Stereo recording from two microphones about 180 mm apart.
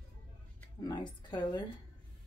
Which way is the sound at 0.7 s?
25° left (ahead or behind).